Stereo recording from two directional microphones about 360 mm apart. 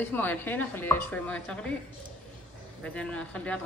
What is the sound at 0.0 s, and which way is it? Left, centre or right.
A woman's voice, centre.